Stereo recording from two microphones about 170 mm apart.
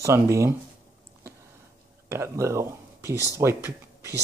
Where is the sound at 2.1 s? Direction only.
15° right (ahead or behind).